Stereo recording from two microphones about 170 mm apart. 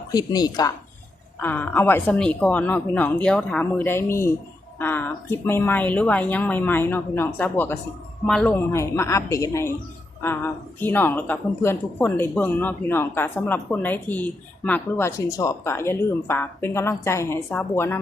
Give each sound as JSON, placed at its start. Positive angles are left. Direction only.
{"t": 0.1, "sound": "speech", "side_deg": 25}
{"t": 1.4, "sound": "speech", "side_deg": 10}